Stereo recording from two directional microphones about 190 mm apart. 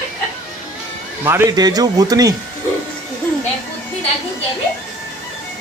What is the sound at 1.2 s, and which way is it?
A man's voice, 15° right (ahead or behind).